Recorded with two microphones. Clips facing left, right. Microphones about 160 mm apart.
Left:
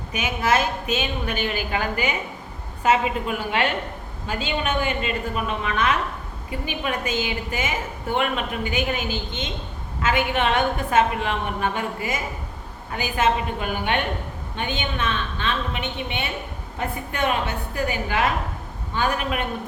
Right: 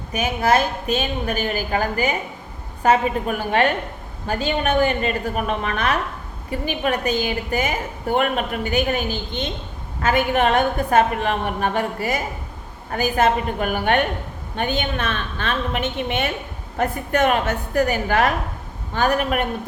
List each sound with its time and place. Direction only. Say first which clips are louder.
0.1 s a woman's voice: right 4 dB; 35° right (ahead or behind)